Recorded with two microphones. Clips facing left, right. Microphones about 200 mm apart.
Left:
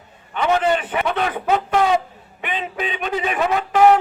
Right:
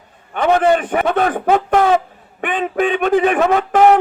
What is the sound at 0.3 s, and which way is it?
A man's voice, 50° right (ahead or behind).